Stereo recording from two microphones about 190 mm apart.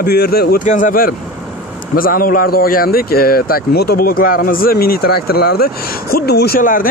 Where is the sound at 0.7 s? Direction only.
45° left (ahead or behind).